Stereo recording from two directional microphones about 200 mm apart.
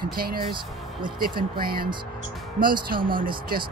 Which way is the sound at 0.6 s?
25° right (ahead or behind).